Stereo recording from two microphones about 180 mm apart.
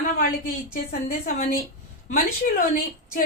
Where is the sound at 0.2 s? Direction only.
55° left (ahead or behind).